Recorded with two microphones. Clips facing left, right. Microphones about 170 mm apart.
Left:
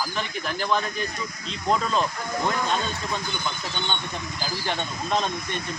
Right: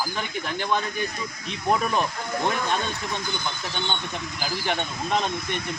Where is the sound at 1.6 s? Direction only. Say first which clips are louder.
Even; 15° right (ahead or behind).